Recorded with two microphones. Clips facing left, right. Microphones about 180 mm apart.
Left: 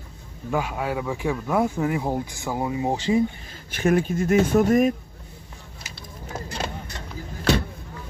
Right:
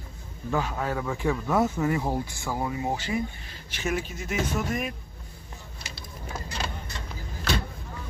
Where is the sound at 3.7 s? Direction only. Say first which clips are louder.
Left 9 dB; 55° left (ahead or behind).